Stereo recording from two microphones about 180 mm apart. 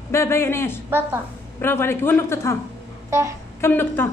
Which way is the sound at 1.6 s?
15° left (ahead or behind).